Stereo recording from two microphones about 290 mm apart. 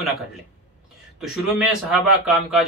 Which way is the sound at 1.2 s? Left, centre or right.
Centre.